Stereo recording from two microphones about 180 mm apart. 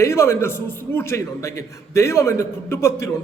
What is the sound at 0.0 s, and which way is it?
A man's voice, 15° left (ahead or behind).